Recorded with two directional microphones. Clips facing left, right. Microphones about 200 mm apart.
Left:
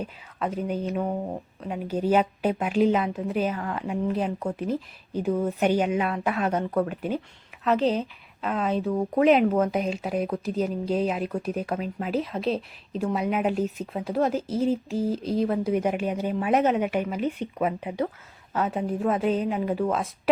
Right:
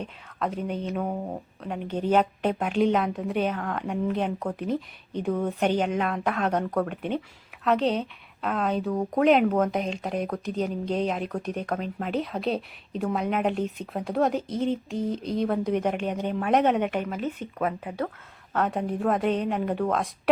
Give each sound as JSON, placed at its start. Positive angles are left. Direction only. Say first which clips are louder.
{"t": 0.0, "sound": "speech", "louder": "left 1 dB", "side_deg": 5}
{"t": 18.5, "sound": "speech", "louder": "even", "side_deg": 5}